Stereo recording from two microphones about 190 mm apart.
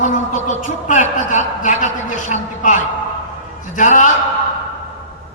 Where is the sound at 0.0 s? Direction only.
40° left (ahead or behind).